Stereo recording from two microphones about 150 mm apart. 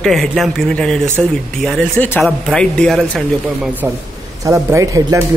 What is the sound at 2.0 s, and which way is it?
Speech, 15° left (ahead or behind).